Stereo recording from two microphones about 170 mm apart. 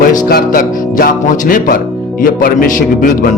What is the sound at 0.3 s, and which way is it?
A man's voice, 55° left (ahead or behind).